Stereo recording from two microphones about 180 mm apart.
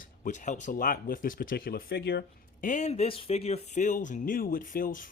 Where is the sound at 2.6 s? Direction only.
40° left (ahead or behind).